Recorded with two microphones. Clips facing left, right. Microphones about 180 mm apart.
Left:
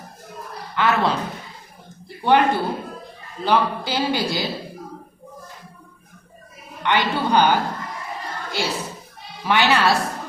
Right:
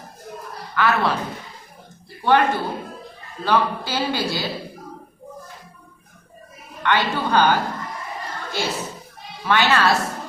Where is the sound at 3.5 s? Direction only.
15° left (ahead or behind).